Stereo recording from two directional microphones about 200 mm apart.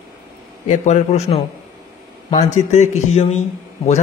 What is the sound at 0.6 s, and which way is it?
Speech, 35° left (ahead or behind).